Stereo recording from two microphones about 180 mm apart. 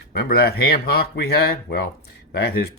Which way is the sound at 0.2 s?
60° left (ahead or behind).